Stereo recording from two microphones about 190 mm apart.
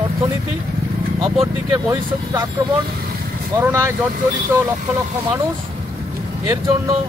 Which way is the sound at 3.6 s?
15° right (ahead or behind).